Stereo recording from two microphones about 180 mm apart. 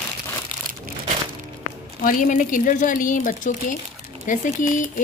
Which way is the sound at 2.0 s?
45° left (ahead or behind).